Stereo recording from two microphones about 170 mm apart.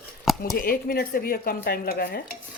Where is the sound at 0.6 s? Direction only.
60° left (ahead or behind).